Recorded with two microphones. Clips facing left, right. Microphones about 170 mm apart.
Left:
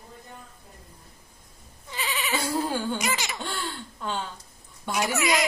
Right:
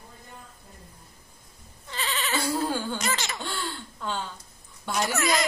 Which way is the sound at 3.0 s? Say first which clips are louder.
Left 1 dB; 10° left (ahead or behind).